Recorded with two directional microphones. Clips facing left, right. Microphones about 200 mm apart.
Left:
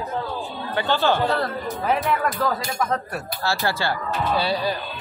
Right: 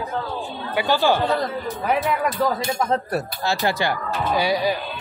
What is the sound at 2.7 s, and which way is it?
Speech, 30° right (ahead or behind).